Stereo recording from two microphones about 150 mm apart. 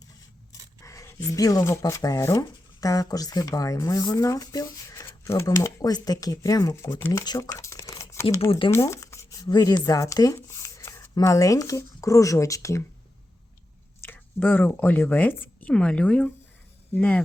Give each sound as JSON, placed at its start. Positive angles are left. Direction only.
{"t": 0.8, "sound": "speech", "side_deg": 20}
{"t": 7.3, "sound": "a sound", "side_deg": 25}
{"t": 8.4, "sound": "speech", "side_deg": 35}
{"t": 8.7, "sound": "speech", "side_deg": 20}
{"t": 14.0, "sound": "speech", "side_deg": 10}